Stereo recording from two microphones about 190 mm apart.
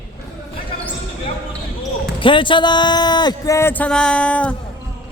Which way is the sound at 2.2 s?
25° left (ahead or behind).